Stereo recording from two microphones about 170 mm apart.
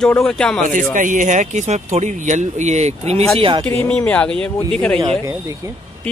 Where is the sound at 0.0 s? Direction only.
5° left (ahead or behind).